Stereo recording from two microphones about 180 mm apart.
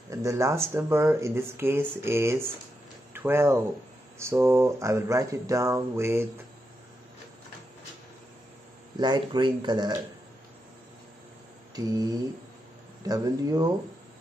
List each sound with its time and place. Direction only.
0.1 s speech: 15° right (ahead or behind)
8.9 s speech: 25° right (ahead or behind)
11.7 s speech: 20° right (ahead or behind)